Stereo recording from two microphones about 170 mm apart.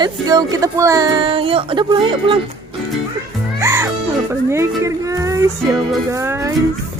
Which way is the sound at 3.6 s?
15° right (ahead or behind).